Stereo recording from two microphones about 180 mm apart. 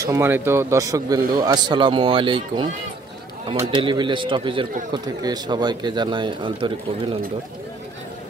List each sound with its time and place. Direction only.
0.0 s a man's voice: 15° right (ahead or behind)